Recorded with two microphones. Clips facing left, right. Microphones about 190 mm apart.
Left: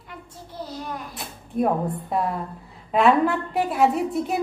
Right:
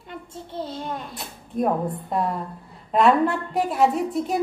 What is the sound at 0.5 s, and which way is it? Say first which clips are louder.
Child singing: right 2 dB; 25° right (ahead or behind).